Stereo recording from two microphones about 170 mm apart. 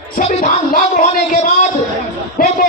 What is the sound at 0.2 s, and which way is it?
Speech, 45° left (ahead or behind).